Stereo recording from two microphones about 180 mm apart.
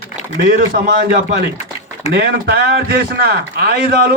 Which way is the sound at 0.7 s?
60° right (ahead or behind).